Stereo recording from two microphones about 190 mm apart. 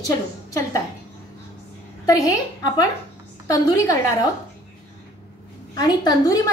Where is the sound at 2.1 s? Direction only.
20° left (ahead or behind).